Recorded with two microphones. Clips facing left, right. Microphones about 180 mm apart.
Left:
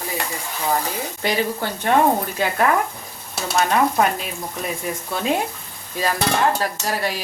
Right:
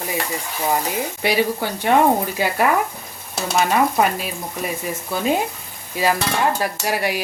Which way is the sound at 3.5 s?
5° right (ahead or behind).